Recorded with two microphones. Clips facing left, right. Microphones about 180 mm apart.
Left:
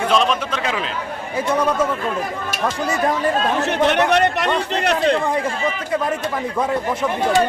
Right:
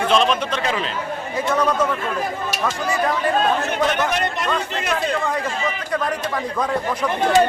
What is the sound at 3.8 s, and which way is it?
Speech, 70° left (ahead or behind).